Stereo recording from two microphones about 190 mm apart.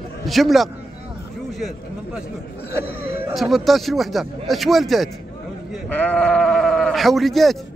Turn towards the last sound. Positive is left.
turn(degrees=0)  # may be behind; listen again after turning